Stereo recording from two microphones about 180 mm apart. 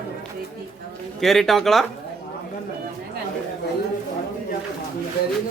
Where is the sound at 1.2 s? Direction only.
Centre (ahead or behind).